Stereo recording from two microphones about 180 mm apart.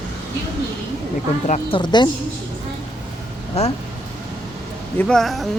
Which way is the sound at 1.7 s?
25° left (ahead or behind).